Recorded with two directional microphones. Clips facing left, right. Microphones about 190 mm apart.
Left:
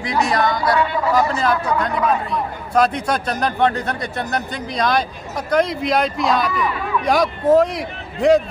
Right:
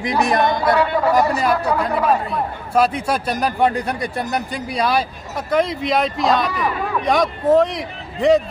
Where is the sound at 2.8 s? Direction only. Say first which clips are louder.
Even; 5° right (ahead or behind).